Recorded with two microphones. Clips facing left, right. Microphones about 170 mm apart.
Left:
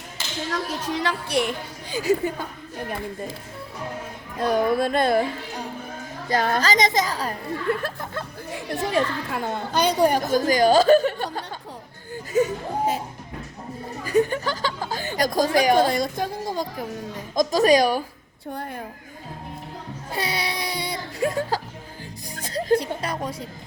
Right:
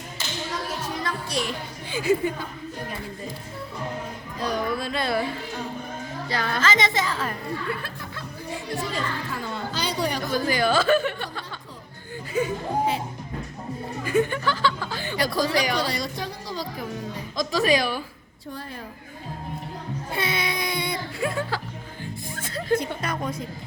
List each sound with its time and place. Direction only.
1.0 s music: 60° left (ahead or behind)
1.9 s speech: 40° left (ahead or behind)
4.4 s speech: 50° left (ahead or behind)
6.2 s speech: 45° left (ahead or behind)
8.7 s a woman's voice: 65° left (ahead or behind); by 13.0 s 45° left (ahead or behind)
14.0 s speech: 40° left (ahead or behind)
20.1 s music: 35° left (ahead or behind)
22.4 s a sound: 40° left (ahead or behind)